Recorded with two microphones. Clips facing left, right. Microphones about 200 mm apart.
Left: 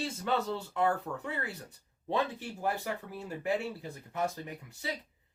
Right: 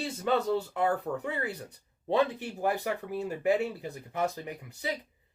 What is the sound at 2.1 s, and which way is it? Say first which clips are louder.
Speech: right 5 dB; 20° right (ahead or behind).